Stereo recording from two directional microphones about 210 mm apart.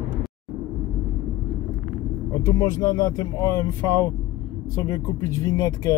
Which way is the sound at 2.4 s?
15° left (ahead or behind).